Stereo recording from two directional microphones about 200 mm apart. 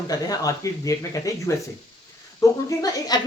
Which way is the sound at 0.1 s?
15° left (ahead or behind).